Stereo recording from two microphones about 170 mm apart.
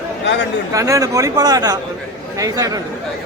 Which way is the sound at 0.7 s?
20° right (ahead or behind).